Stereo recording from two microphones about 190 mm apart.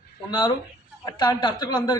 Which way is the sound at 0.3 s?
25° left (ahead or behind).